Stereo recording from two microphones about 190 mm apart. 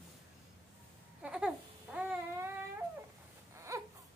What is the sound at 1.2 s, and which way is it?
Babbling, 5° right (ahead or behind).